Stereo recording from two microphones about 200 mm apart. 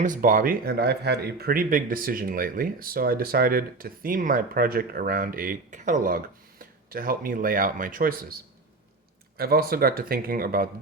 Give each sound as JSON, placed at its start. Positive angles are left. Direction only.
{"t": 0.0, "sound": "speech", "side_deg": -40}
{"t": 9.4, "sound": "speech", "side_deg": -50}